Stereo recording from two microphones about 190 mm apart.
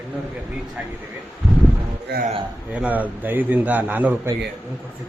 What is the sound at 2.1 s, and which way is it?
Speech, 60° right (ahead or behind).